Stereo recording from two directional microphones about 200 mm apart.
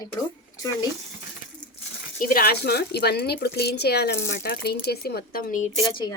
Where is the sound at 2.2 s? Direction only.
45° left (ahead or behind).